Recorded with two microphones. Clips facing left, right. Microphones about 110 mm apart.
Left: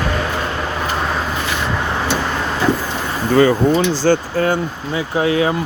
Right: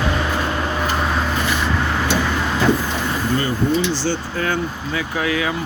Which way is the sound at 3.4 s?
90° left.